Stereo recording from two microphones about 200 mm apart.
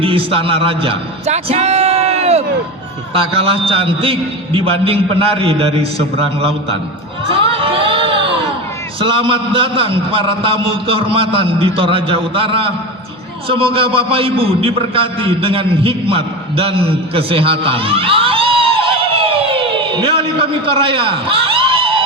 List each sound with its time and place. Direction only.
0.0 s a man's voice: 25° right (ahead or behind)
7.3 s a sound: 25° right (ahead or behind)
9.0 s a man's voice: 25° right (ahead or behind)